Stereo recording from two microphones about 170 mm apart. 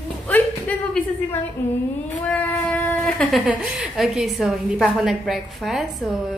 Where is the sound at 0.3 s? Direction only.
10° left (ahead or behind).